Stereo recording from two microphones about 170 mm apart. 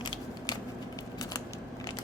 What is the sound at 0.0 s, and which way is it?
Scissors, 25° left (ahead or behind).